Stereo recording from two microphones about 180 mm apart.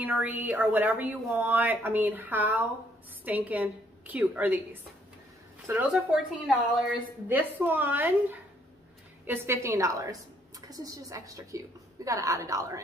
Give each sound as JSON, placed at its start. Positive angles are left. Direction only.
{"t": 0.0, "sound": "speech", "side_deg": -10}
{"t": 5.7, "sound": "speech", "side_deg": -5}